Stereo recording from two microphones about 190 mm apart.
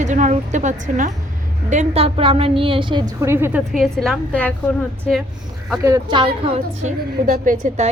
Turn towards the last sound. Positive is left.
turn(degrees=-40)  # may be behind; listen again after turning